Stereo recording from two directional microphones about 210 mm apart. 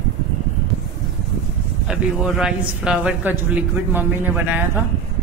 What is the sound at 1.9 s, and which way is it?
A woman's voice, 5° right (ahead or behind).